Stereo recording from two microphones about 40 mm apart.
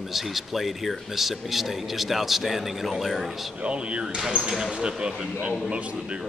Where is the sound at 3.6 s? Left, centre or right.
Right.